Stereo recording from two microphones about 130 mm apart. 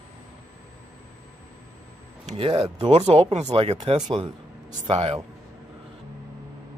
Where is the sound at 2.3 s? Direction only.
45° right (ahead or behind).